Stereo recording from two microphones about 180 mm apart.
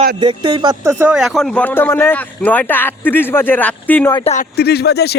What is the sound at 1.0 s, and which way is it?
Speech, 5° right (ahead or behind).